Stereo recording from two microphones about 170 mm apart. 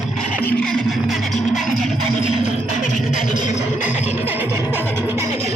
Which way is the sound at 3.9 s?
40° left (ahead or behind).